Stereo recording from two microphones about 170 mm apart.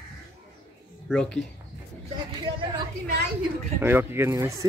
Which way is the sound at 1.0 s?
5° left (ahead or behind).